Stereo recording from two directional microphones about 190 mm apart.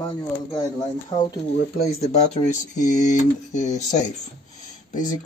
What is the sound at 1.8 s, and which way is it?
Speech, 35° left (ahead or behind).